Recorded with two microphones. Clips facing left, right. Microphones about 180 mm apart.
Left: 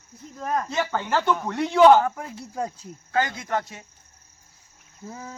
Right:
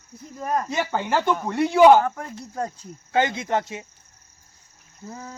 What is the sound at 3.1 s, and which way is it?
Speech, 25° right (ahead or behind).